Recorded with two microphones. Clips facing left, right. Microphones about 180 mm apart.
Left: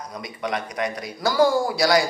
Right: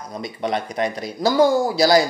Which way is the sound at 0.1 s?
25° right (ahead or behind).